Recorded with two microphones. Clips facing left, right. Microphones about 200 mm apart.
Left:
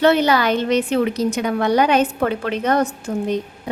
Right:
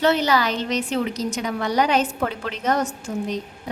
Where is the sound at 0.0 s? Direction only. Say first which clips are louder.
Left 4 dB; 60° left (ahead or behind).